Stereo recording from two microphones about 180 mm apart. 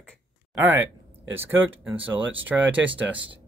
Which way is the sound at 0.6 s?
10° right (ahead or behind).